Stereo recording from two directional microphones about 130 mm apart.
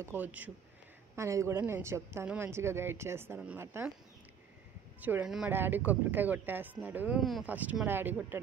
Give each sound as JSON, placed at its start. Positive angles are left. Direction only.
{"t": 0.0, "sound": "speech", "side_deg": -15}
{"t": 5.0, "sound": "speech", "side_deg": -15}
{"t": 7.2, "sound": "speech", "side_deg": 0}
{"t": 7.4, "sound": "speech", "side_deg": -10}